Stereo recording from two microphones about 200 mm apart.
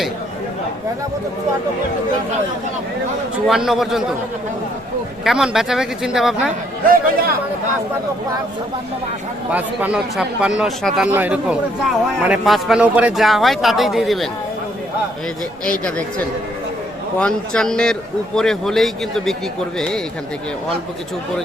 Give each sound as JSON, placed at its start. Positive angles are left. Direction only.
{"t": 3.4, "sound": "speech", "side_deg": 0}
{"t": 5.2, "sound": "speech", "side_deg": 0}
{"t": 6.8, "sound": "speech", "side_deg": -45}
{"t": 9.5, "sound": "speech", "side_deg": -5}
{"t": 15.8, "sound": "speech", "side_deg": 5}